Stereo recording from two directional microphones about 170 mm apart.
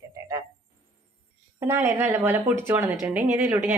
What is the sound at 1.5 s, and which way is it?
A woman's voice, 15° right (ahead or behind).